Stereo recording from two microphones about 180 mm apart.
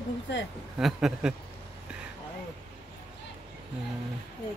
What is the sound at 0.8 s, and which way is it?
Speech, centre (ahead or behind).